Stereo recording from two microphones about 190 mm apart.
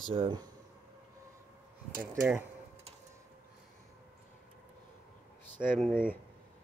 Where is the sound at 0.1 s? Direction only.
25° right (ahead or behind).